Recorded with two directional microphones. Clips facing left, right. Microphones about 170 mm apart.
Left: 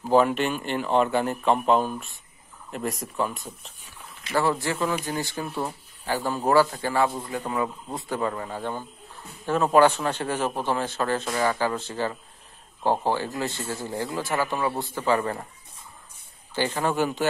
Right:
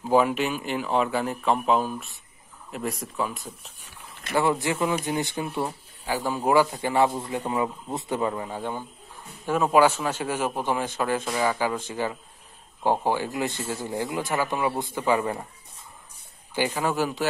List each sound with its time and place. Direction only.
0.0 s a man's voice: 10° right (ahead or behind)
4.3 s a man's voice: 20° right (ahead or behind)
16.5 s a man's voice: 10° right (ahead or behind)